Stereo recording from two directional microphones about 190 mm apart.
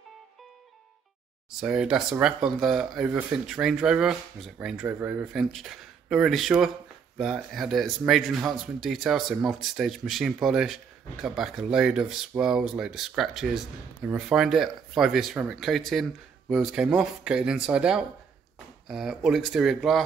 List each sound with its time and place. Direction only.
1.5 s speech: 5° right (ahead or behind)